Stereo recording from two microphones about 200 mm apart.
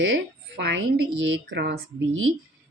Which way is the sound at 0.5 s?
60° right (ahead or behind).